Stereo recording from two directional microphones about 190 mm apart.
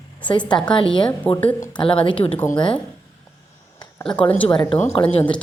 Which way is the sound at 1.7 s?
25° left (ahead or behind).